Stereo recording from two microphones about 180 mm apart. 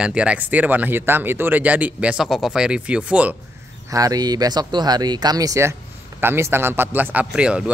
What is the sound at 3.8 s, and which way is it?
Speech, 20° right (ahead or behind).